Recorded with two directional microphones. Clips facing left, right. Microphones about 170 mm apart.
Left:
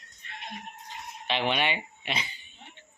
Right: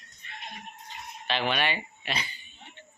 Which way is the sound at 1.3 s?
20° left (ahead or behind).